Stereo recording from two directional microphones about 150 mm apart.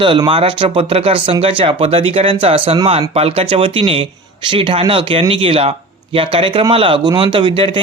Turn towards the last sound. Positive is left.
turn(degrees=-35)  # may be behind; listen again after turning